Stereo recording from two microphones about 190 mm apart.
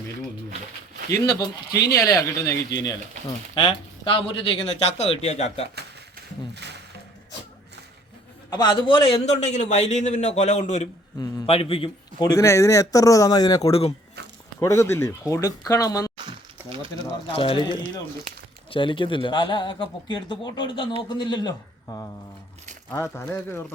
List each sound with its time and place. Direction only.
1.4 s a man's voice: 20° left (ahead or behind); by 5.6 s 35° left (ahead or behind)
8.4 s a man's voice: 20° left (ahead or behind)
12.2 s speech: 15° left (ahead or behind)
14.6 s speech: 15° left (ahead or behind)
16.1 s a sound: 25° right (ahead or behind)
17.2 s speech: 30° left (ahead or behind); by 23.7 s 10° left (ahead or behind)